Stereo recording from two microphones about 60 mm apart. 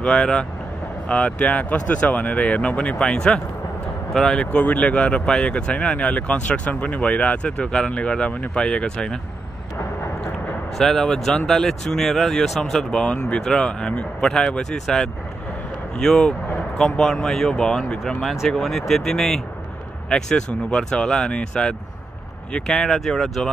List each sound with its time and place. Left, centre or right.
0.0 s speech: centre
4.5 s speech: left
10.8 s speech: centre